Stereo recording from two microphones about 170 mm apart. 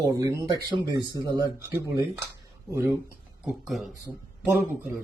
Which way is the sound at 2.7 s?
15° right (ahead or behind).